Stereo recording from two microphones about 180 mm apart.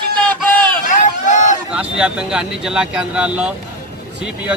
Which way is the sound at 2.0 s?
5° right (ahead or behind).